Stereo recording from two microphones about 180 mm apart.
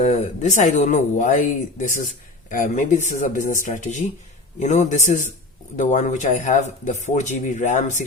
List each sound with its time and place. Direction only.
0.0 s a man's voice: 45° left (ahead or behind)